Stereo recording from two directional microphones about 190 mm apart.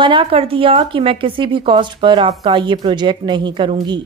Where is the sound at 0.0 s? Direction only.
25° right (ahead or behind).